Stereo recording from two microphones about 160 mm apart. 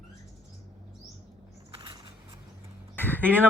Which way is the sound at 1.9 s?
30° right (ahead or behind).